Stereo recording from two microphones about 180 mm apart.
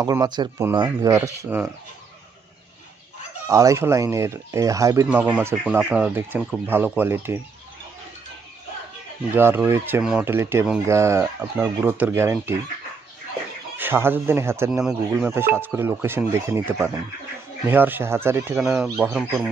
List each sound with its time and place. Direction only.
0.0 s speech: 20° right (ahead or behind)
3.4 s speech: 15° right (ahead or behind)
9.3 s speech: 10° right (ahead or behind)
13.7 s speech: 10° right (ahead or behind)
14.7 s speech: 5° right (ahead or behind)